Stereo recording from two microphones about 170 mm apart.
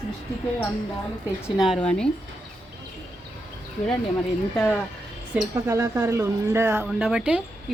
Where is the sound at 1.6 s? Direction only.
5° left (ahead or behind).